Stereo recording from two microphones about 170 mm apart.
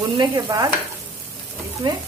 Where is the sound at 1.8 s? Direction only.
25° right (ahead or behind).